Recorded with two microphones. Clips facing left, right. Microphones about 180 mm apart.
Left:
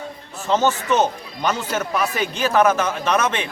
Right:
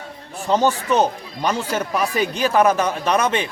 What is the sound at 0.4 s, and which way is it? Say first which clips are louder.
Speech: right 1 dB; 15° right (ahead or behind).